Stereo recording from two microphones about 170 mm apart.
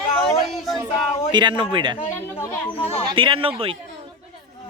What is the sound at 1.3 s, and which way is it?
Speech, 25° right (ahead or behind).